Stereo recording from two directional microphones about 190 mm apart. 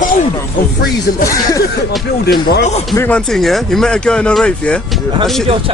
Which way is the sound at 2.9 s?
5° left (ahead or behind).